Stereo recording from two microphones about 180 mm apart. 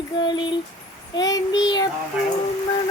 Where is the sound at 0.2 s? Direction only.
25° left (ahead or behind).